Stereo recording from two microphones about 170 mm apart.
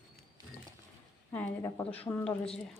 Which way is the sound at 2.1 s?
20° left (ahead or behind).